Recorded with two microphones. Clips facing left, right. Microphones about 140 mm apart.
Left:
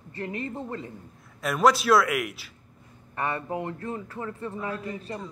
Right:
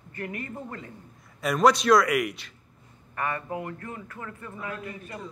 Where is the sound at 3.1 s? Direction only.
25° left (ahead or behind).